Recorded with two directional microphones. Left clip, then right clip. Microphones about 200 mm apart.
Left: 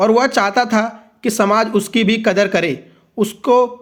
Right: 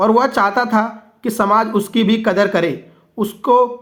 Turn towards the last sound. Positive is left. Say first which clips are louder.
# even
turn(degrees=35)  # may be behind; listen again after turning